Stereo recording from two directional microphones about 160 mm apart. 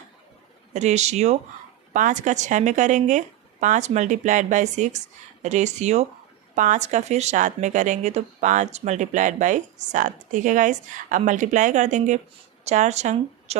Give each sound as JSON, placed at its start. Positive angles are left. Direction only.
{"t": 0.7, "sound": "a woman's voice", "side_deg": -45}